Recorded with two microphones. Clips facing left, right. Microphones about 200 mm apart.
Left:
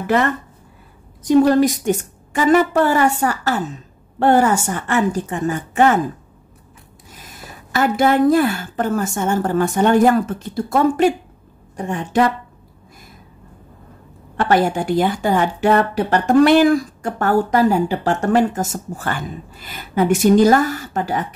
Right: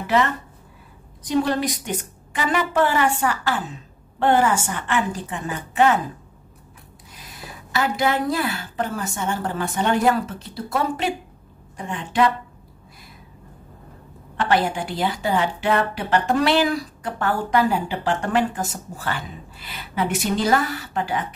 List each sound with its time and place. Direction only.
0.0 s a woman's voice: 50° left (ahead or behind)
7.2 s a woman's voice: 45° left (ahead or behind)
14.3 s a woman's voice: 45° left (ahead or behind)